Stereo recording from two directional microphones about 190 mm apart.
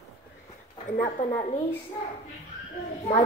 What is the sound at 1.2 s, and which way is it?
Speech, 40° left (ahead or behind).